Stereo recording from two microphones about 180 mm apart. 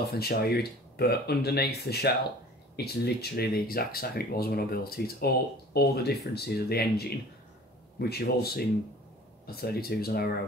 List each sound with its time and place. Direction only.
0.1 s speech: 60° left (ahead or behind)